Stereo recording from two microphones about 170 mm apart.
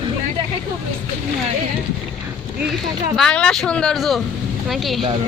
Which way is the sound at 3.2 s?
5° left (ahead or behind).